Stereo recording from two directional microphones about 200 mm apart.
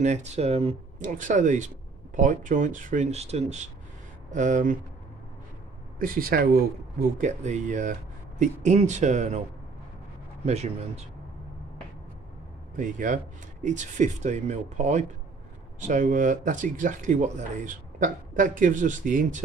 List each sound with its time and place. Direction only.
0.0 s speech: 35° right (ahead or behind)
5.9 s speech: 45° right (ahead or behind)
7.2 s speech: 35° right (ahead or behind)
10.4 s speech: 35° right (ahead or behind)
12.7 s speech: 40° right (ahead or behind)